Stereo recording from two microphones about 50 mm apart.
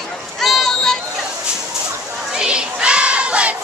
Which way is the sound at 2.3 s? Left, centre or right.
Centre.